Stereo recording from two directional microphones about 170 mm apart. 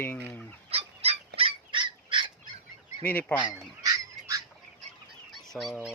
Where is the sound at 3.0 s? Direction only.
10° left (ahead or behind).